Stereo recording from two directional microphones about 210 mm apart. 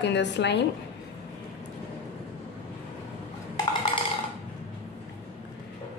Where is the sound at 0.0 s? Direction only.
55° left (ahead or behind).